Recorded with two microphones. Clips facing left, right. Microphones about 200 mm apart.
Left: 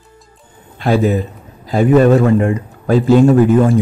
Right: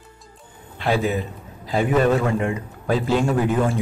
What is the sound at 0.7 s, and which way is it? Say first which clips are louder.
A man's voice: left 7 dB; 40° left (ahead or behind).